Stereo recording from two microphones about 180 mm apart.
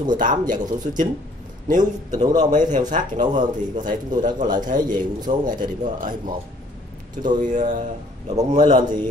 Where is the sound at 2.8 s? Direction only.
45° right (ahead or behind).